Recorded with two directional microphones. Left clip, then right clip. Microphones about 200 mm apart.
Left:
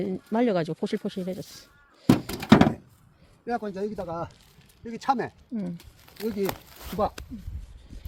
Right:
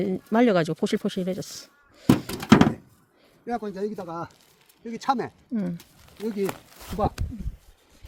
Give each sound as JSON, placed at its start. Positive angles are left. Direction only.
{"t": 0.0, "sound": "speech", "side_deg": -30}
{"t": 2.0, "sound": "thunk", "side_deg": -15}
{"t": 3.4, "sound": "speech", "side_deg": -10}
{"t": 5.5, "sound": "speech", "side_deg": -35}
{"t": 6.2, "sound": "speech", "side_deg": 15}
{"t": 6.7, "sound": "speech", "side_deg": -10}